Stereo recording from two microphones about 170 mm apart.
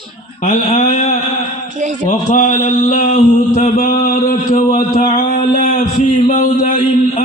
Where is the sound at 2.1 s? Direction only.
45° left (ahead or behind).